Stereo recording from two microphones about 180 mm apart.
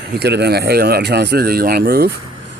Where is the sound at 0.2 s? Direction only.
65° right (ahead or behind).